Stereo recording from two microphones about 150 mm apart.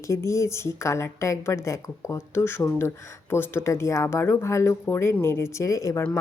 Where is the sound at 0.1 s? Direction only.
20° left (ahead or behind).